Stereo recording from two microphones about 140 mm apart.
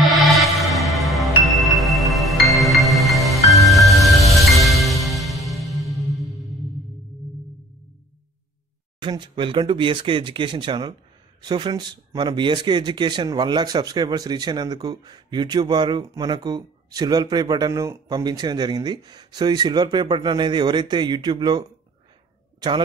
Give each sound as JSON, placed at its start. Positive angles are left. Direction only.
{"t": 0.0, "sound": "music", "side_deg": 0}
{"t": 9.0, "sound": "speech", "side_deg": -35}